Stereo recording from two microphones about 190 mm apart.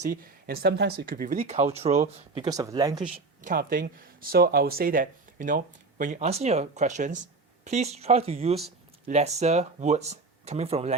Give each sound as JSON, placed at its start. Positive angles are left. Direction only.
{"t": 0.0, "sound": "speech", "side_deg": -50}
{"t": 2.4, "sound": "speech", "side_deg": -20}
{"t": 3.4, "sound": "speech", "side_deg": -50}